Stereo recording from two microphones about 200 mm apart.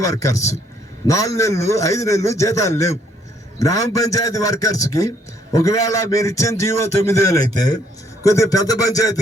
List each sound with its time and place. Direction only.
0.0 s a man's voice: 15° left (ahead or behind)